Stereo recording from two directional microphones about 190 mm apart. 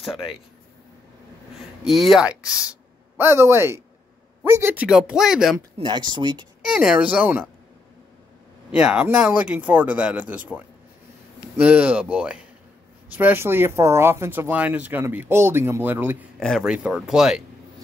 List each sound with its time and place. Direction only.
1.9 s speech: centre (ahead or behind)
5.8 s speech: 25° right (ahead or behind)
6.6 s speech: 5° right (ahead or behind)
8.7 s speech: 5° right (ahead or behind)
16.3 s speech: centre (ahead or behind)